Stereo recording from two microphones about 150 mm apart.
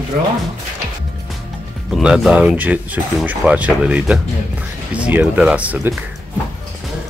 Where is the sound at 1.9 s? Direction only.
5° right (ahead or behind).